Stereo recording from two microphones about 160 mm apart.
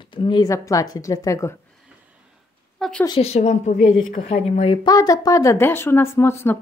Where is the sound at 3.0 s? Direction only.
35° left (ahead or behind).